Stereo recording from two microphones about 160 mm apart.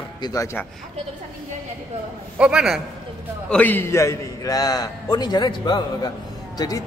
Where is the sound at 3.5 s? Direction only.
10° left (ahead or behind).